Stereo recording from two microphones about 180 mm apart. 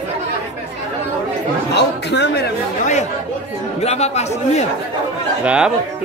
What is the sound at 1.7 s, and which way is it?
Speech, 70° left (ahead or behind).